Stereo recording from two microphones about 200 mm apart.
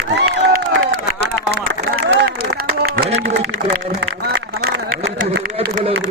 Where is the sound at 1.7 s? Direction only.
65° right (ahead or behind).